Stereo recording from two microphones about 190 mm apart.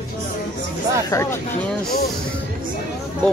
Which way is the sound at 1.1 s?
15° left (ahead or behind).